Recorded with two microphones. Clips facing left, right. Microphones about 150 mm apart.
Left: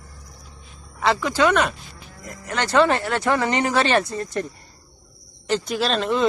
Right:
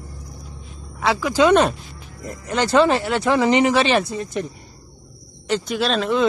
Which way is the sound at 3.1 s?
5° right (ahead or behind).